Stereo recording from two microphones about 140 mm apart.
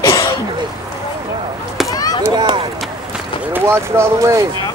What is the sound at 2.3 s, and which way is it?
Speech, 30° right (ahead or behind).